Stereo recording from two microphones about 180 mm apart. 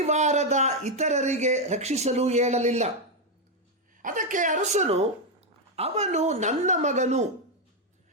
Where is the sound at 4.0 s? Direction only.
45° right (ahead or behind).